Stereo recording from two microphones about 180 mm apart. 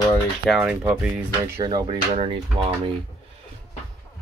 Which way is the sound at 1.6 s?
20° right (ahead or behind).